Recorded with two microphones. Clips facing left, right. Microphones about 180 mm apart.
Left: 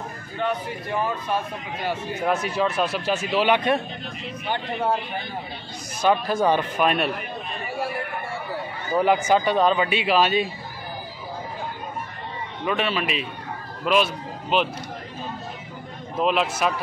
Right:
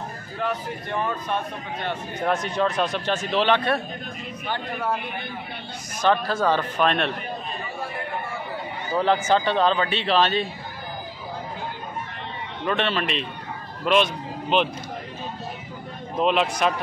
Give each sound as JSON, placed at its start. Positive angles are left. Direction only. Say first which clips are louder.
{"t": 0.4, "sound": "a man's voice", "louder": "left 2 dB", "side_deg": 0}
{"t": 4.5, "sound": "a man's voice", "louder": "left 3 dB", "side_deg": 25}
{"t": 5.9, "sound": "a man's voice", "louder": "left 1 dB", "side_deg": 10}
{"t": 8.9, "sound": "a man's voice", "louder": "left 1 dB", "side_deg": 10}
{"t": 12.6, "sound": "a man's voice", "louder": "even", "side_deg": 5}
{"t": 16.2, "sound": "a man's voice", "louder": "right 1 dB", "side_deg": 5}